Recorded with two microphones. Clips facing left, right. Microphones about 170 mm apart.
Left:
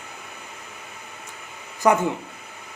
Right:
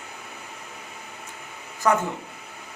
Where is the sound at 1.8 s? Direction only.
15° left (ahead or behind).